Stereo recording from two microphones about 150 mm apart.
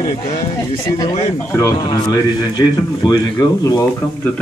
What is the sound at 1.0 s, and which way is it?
Speech, 45° left (ahead or behind).